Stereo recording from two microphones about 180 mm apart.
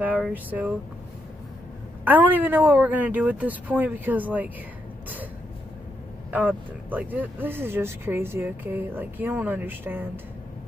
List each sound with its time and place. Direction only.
0.0 s speech: 10° right (ahead or behind)
2.0 s speech: 10° right (ahead or behind)
6.3 s speech: 10° right (ahead or behind)